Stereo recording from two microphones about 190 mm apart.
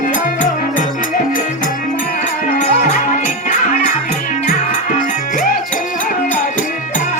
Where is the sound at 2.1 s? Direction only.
45° left (ahead or behind).